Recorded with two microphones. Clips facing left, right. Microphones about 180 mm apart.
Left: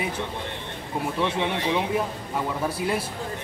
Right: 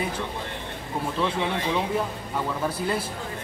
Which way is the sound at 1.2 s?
20° left (ahead or behind).